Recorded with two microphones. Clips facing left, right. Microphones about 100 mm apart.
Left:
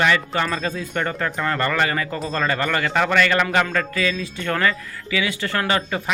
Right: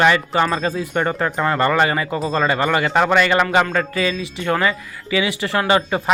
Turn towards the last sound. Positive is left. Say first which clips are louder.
# right 5 dB
turn(degrees=-20)  # may be behind; listen again after turning